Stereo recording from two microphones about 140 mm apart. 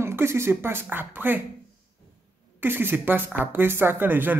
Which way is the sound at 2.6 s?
15° right (ahead or behind).